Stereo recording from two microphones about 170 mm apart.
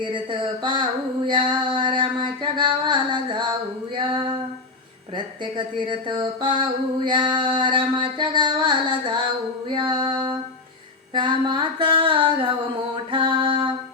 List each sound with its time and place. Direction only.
0.0 s female singing: 30° right (ahead or behind)
3.9 s music: 30° right (ahead or behind)
9.6 s female singing: 30° right (ahead or behind)
13.1 s music: 30° right (ahead or behind)